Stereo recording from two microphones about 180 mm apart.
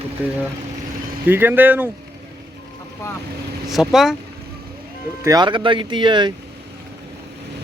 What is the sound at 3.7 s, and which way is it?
Speech, centre (ahead or behind).